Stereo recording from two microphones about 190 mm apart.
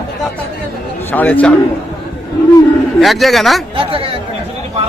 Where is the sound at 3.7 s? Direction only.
30° right (ahead or behind).